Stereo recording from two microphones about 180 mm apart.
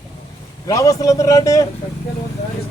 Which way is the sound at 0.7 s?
20° left (ahead or behind).